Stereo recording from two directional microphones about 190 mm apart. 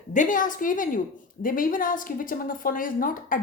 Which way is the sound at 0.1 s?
45° left (ahead or behind).